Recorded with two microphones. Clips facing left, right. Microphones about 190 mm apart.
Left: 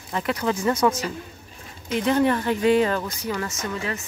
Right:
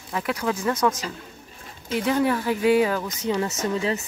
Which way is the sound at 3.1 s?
20° right (ahead or behind).